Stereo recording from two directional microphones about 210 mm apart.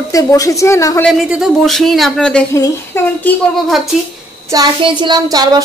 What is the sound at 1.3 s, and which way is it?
A woman's voice, centre (ahead or behind).